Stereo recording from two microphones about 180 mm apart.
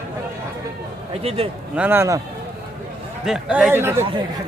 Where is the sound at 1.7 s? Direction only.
10° right (ahead or behind).